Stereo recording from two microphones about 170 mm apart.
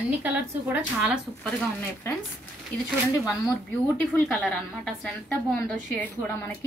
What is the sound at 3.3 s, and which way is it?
A woman's voice, 10° left (ahead or behind).